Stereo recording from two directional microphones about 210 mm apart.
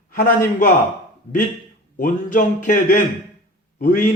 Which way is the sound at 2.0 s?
40° left (ahead or behind).